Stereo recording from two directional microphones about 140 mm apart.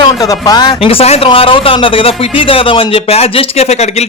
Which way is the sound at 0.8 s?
45° left (ahead or behind).